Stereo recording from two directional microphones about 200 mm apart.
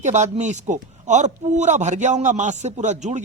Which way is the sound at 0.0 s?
35° right (ahead or behind).